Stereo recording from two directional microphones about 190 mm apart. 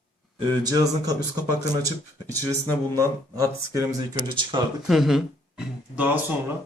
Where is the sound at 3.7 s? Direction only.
15° right (ahead or behind).